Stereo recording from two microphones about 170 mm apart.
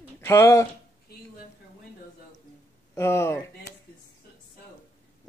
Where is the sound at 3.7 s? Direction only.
70° left (ahead or behind).